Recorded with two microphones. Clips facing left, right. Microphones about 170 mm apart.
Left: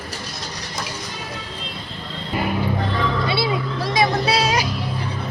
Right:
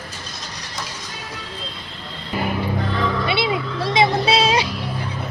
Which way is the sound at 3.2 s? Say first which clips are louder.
Even; 20° right (ahead or behind).